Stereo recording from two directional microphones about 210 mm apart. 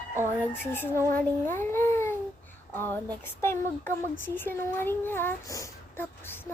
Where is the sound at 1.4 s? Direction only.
10° left (ahead or behind).